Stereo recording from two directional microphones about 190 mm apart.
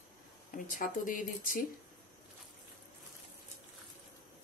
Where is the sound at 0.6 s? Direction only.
45° left (ahead or behind).